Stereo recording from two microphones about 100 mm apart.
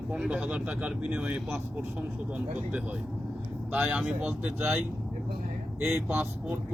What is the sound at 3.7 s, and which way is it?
A man's voice, 10° right (ahead or behind).